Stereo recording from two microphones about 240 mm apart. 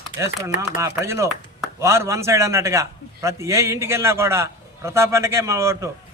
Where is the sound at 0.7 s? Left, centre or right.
Centre.